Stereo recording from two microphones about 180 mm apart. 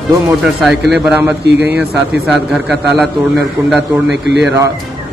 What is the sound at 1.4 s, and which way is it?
Speech, 70° right (ahead or behind).